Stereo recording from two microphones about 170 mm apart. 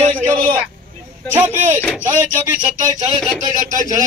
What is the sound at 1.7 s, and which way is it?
Speech, 10° left (ahead or behind).